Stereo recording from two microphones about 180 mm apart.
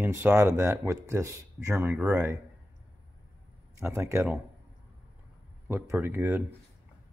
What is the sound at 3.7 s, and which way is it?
Speech, 15° right (ahead or behind).